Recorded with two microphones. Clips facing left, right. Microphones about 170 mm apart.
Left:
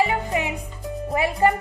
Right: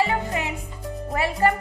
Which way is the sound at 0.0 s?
15° left (ahead or behind).